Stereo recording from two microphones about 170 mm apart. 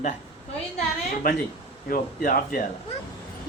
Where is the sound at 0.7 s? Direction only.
50° left (ahead or behind).